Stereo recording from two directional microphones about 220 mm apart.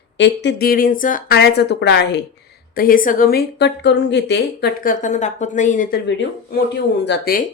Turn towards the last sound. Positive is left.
turn(degrees=40)  # may be behind; listen again after turning